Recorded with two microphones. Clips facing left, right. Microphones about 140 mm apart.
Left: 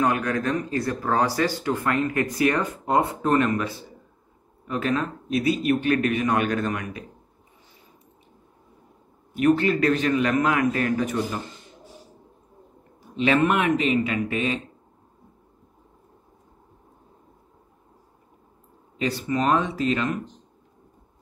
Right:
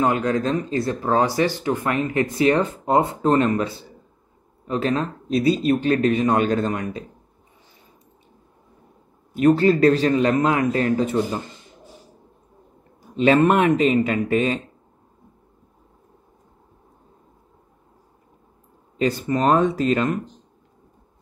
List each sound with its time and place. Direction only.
0.0 s a man's voice: 25° right (ahead or behind)
9.4 s a man's voice: 35° right (ahead or behind)
13.1 s a man's voice: 40° right (ahead or behind)
18.9 s speech: 45° right (ahead or behind)